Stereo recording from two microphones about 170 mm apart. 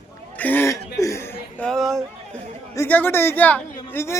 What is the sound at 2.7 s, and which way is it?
A man's voice, 15° left (ahead or behind).